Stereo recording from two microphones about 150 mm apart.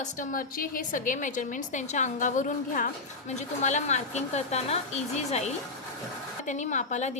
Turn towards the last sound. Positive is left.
turn(degrees=50)  # may be behind; listen again after turning